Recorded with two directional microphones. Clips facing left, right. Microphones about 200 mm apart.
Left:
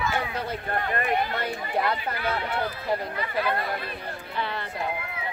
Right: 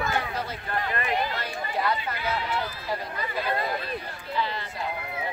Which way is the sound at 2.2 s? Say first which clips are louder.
Left 1 dB; 55° left (ahead or behind).